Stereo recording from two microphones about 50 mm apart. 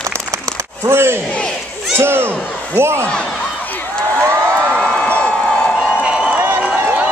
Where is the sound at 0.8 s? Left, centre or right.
Right.